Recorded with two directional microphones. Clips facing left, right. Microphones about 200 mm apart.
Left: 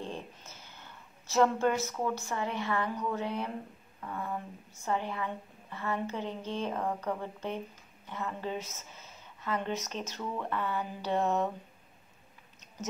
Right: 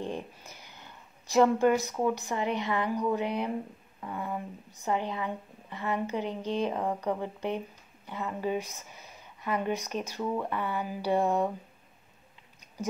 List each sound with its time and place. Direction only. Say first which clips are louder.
0.0 s a woman's voice: right 4 dB; 15° right (ahead or behind)